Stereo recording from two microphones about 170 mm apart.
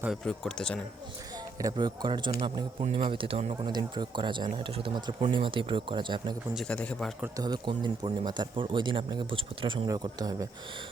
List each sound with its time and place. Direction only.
0.0 s speech: centre (ahead or behind)
1.5 s speech: 25° right (ahead or behind)
6.5 s speech: 5° left (ahead or behind)
7.3 s speech: 25° right (ahead or behind)